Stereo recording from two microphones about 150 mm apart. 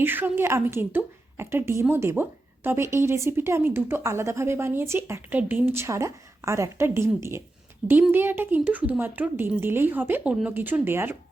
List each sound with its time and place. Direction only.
0.0 s speech: 15° right (ahead or behind)